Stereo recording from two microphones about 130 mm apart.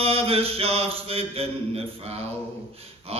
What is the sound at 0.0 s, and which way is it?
Mantra, 50° right (ahead or behind).